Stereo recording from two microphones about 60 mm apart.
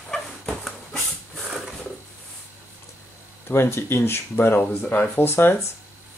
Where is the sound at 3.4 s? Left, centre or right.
Left.